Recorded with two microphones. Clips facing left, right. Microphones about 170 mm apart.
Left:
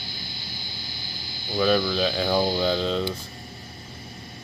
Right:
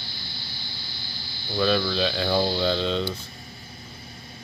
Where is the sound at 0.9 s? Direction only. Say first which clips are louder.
Left 2 dB; 15° left (ahead or behind).